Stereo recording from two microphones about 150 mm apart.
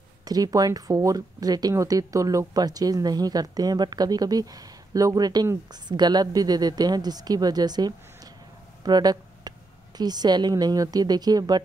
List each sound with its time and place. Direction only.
0.2 s speech: 25° right (ahead or behind)
8.8 s a sound: 25° right (ahead or behind)
9.9 s speech: 25° right (ahead or behind)